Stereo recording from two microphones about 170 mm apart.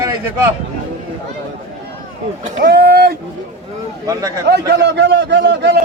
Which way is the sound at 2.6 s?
70° right (ahead or behind).